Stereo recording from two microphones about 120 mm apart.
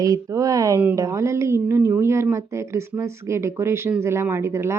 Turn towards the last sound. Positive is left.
turn(degrees=-25)  # may be behind; listen again after turning